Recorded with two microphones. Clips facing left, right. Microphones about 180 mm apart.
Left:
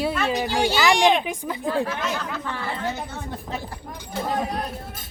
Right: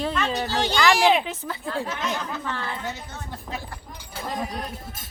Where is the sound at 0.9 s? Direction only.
5° right (ahead or behind).